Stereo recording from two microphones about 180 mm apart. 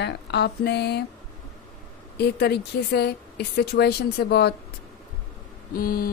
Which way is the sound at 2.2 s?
65° left (ahead or behind).